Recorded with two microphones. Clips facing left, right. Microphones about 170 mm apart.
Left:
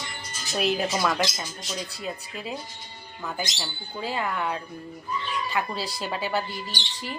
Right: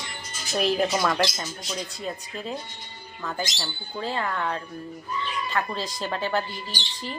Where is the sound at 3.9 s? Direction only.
10° left (ahead or behind).